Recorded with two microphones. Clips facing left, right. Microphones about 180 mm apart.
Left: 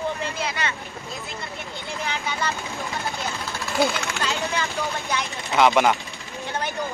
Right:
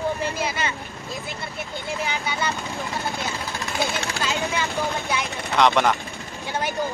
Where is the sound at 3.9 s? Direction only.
35° right (ahead or behind).